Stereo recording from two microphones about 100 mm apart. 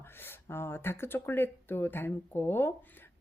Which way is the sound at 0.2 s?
25° left (ahead or behind).